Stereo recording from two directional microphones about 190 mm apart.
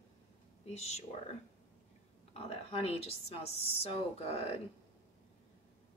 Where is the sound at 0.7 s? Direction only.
35° left (ahead or behind).